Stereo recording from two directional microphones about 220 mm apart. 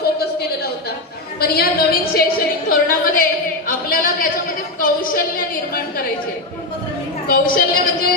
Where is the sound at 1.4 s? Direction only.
45° left (ahead or behind).